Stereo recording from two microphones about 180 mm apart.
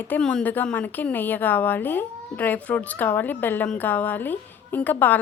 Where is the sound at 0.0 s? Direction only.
10° left (ahead or behind).